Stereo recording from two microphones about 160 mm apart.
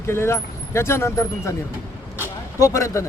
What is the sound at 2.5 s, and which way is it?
Speech, 20° left (ahead or behind).